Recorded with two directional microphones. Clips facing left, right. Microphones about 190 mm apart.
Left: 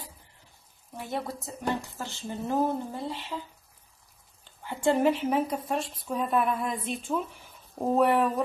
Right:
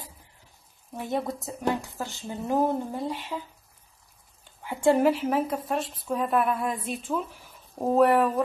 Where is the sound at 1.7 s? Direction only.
15° right (ahead or behind).